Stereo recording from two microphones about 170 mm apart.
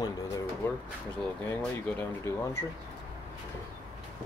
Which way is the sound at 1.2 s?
10° left (ahead or behind).